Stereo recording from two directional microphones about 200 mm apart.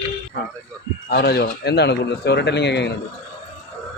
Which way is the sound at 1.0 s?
55° left (ahead or behind).